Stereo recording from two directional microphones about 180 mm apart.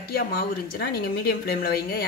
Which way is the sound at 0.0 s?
55° left (ahead or behind).